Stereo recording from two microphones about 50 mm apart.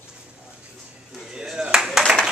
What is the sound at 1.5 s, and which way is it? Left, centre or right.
Clapping, centre.